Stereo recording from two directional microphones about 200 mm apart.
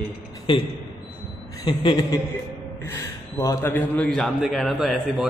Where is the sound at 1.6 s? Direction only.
20° left (ahead or behind); by 5.3 s centre (ahead or behind).